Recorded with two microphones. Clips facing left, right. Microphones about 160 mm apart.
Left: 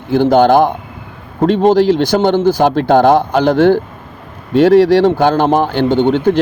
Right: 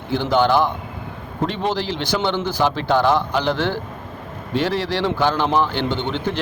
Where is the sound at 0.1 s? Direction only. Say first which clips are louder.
Left 8 dB; 50° left (ahead or behind).